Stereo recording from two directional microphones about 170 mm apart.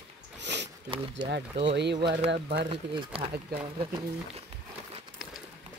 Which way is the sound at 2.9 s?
35° right (ahead or behind).